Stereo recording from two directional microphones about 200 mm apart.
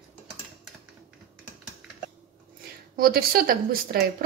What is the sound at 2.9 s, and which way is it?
A woman's voice, 45° right (ahead or behind).